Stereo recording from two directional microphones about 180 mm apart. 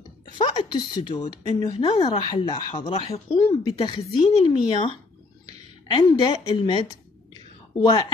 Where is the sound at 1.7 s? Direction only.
30° left (ahead or behind).